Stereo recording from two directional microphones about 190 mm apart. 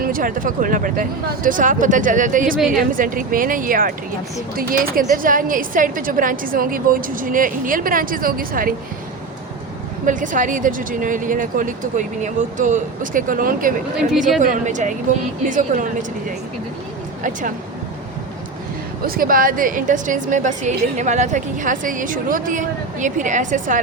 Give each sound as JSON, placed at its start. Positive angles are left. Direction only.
{"t": 0.0, "sound": "a woman's voice", "side_deg": -45}
{"t": 10.1, "sound": "a woman's voice", "side_deg": -45}
{"t": 19.0, "sound": "a woman's voice", "side_deg": -50}